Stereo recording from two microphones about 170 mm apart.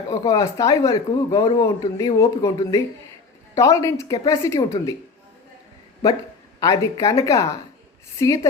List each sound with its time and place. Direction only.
0.1 s speech: 20° left (ahead or behind)
6.6 s speech: 20° left (ahead or behind)